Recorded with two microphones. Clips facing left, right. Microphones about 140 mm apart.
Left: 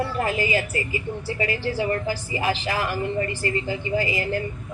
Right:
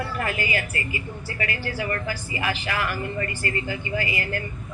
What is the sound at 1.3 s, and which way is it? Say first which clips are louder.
A woman's voice: left 4 dB; 25° left (ahead or behind).